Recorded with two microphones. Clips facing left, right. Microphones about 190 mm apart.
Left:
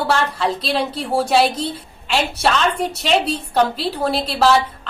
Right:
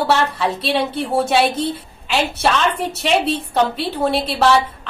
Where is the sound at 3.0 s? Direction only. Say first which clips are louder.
Right 2 dB; centre (ahead or behind).